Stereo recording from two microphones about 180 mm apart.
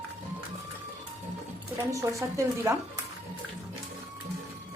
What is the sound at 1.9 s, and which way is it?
A woman's voice, 15° right (ahead or behind).